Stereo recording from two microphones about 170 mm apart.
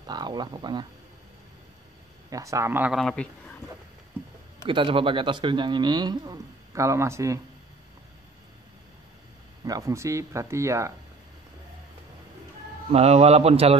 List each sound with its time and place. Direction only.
0.0 s speech: 25° right (ahead or behind)
2.2 s speech: 20° right (ahead or behind)
3.0 s speech: 5° left (ahead or behind)
4.6 s speech: 30° right (ahead or behind)
9.7 s speech: 20° right (ahead or behind)
12.9 s a man's voice: 40° right (ahead or behind)